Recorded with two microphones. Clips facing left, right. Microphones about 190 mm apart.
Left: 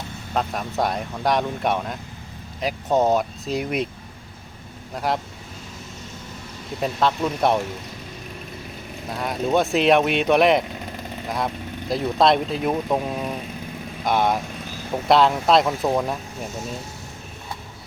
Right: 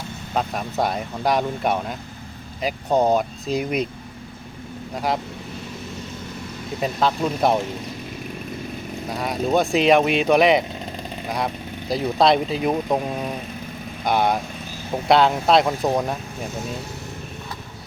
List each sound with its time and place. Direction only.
0.3 s speech: centre (ahead or behind)
4.9 s speech: centre (ahead or behind)
6.7 s speech: centre (ahead or behind)
9.0 s speech: centre (ahead or behind)
15.8 s speech: 20° right (ahead or behind)